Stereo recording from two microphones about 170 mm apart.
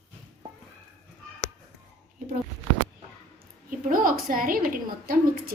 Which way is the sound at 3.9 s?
55° right (ahead or behind).